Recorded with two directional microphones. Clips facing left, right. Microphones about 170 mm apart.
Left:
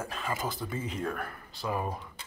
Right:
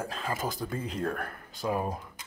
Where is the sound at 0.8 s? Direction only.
5° left (ahead or behind).